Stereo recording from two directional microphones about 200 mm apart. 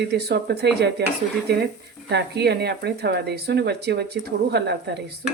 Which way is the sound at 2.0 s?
55° right (ahead or behind).